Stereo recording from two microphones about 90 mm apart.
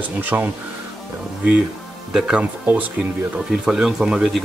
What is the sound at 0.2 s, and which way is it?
Speech, 20° right (ahead or behind).